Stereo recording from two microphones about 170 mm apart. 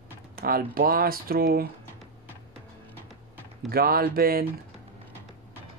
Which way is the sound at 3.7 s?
65° right (ahead or behind).